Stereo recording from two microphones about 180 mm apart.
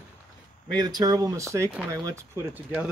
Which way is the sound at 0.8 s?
20° right (ahead or behind).